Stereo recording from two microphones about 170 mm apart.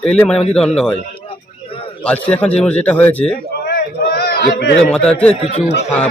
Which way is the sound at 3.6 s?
65° left (ahead or behind).